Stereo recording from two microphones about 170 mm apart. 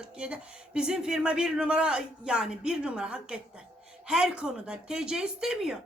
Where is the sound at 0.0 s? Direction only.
5° right (ahead or behind).